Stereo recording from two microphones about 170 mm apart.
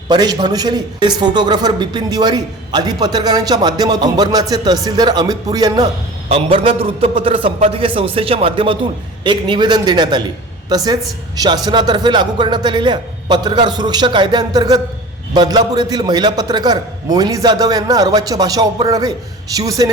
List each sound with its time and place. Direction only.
0.1 s a man's voice: 25° right (ahead or behind)
6.2 s a man's voice: 35° right (ahead or behind)